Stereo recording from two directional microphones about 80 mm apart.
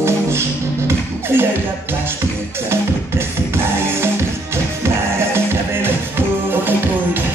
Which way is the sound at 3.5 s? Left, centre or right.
Right.